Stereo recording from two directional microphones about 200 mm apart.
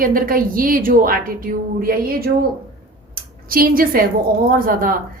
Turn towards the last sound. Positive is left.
turn(degrees=-45)  # may be behind; listen again after turning